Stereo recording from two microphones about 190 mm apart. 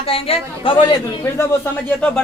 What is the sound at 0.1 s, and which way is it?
Speech, 30° left (ahead or behind).